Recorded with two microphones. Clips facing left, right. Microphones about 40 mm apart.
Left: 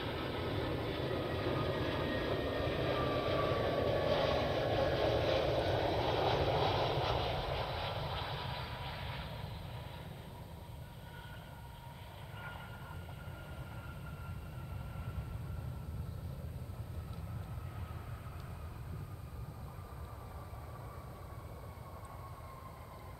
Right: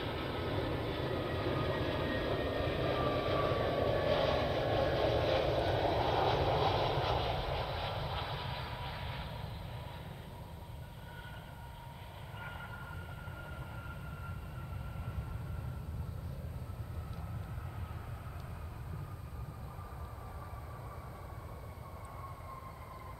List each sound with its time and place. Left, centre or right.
0.0 s vehicle: centre
12.4 s vehicle: centre